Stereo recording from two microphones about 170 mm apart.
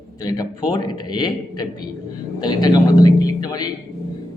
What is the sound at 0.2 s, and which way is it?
A man's voice, 20° left (ahead or behind).